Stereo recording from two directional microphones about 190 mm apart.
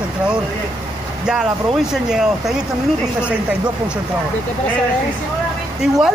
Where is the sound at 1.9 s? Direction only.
5° right (ahead or behind).